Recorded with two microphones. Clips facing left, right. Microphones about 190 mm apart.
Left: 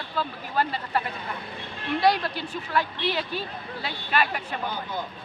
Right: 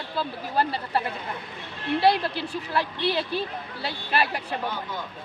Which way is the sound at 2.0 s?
30° right (ahead or behind).